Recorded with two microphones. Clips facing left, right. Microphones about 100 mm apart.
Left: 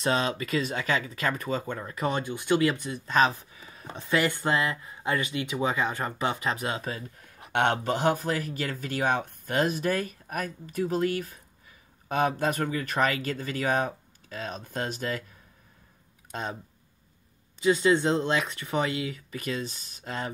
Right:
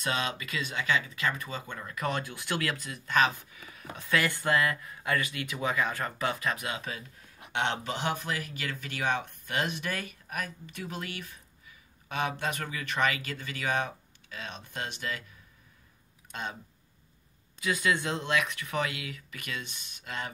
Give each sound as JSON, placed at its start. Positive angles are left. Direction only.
{"t": 0.0, "sound": "speech", "side_deg": 35}
{"t": 16.3, "sound": "a sound", "side_deg": 40}
{"t": 17.6, "sound": "speech", "side_deg": 25}